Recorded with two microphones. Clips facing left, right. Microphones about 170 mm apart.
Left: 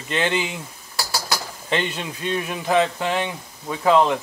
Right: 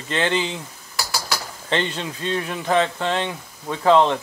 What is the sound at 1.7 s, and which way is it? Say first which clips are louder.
Speech: right 1 dB; 10° left (ahead or behind).